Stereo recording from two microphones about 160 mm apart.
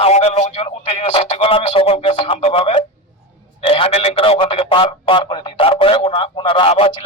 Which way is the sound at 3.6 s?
35° left (ahead or behind).